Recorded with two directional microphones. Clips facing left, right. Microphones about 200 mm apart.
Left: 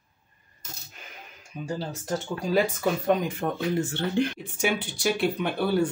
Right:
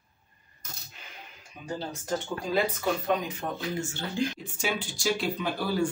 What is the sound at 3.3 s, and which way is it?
Speech, 55° left (ahead or behind).